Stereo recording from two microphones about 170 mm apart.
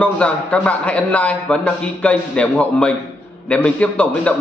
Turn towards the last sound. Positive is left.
turn(degrees=10)  # may be behind; listen again after turning